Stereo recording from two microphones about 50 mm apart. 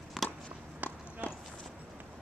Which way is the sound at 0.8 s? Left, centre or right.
Right.